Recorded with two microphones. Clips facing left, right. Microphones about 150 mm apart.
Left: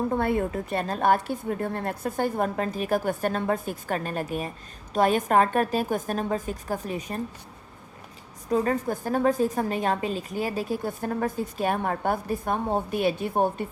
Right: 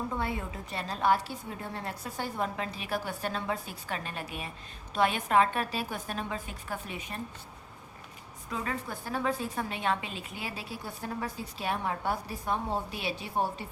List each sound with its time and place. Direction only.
0.1 s a woman's voice: 55° left (ahead or behind)
8.4 s a woman's voice: 45° left (ahead or behind)